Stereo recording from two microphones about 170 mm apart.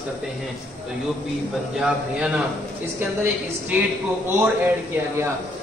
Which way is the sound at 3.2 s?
10° right (ahead or behind).